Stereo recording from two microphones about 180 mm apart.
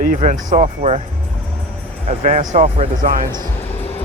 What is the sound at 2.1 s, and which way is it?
Speech, 40° right (ahead or behind).